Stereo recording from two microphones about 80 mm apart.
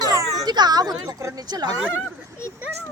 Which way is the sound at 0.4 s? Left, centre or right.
Right.